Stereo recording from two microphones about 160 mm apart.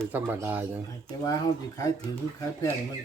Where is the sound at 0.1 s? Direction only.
10° right (ahead or behind).